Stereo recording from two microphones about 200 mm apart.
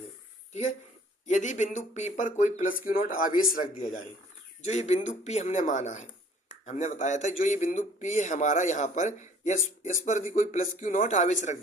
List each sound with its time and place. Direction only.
0.5 s speech: 40° left (ahead or behind)
4.6 s speech: 35° left (ahead or behind)